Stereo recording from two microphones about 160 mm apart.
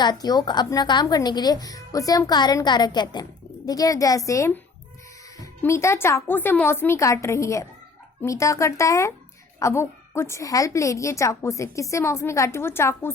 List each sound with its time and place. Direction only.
0.0 s a woman's voice: 25° left (ahead or behind)